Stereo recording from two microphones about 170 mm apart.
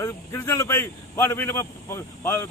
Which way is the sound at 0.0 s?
15° left (ahead or behind).